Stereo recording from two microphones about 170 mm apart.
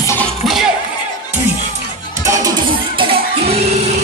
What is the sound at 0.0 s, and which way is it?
Music, 15° left (ahead or behind).